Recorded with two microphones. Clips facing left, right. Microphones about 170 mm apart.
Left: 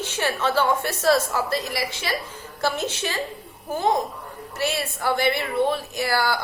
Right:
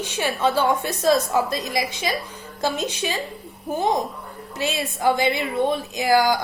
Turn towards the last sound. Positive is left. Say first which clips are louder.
# right 5 dB
turn(degrees=-15)  # may be behind; listen again after turning